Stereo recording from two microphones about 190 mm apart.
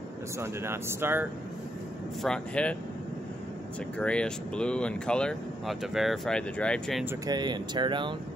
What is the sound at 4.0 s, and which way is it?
Speech, 5° left (ahead or behind).